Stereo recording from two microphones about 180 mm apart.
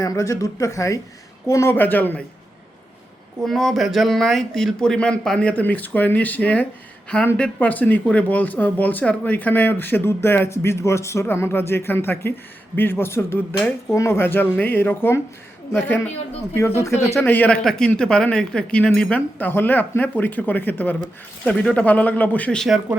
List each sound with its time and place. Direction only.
0.0 s speech: 20° left (ahead or behind)
3.4 s speech: centre (ahead or behind)